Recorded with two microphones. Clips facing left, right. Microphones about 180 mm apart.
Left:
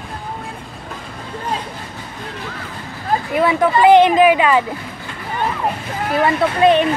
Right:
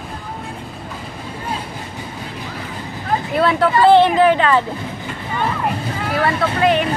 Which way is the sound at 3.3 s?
15° left (ahead or behind).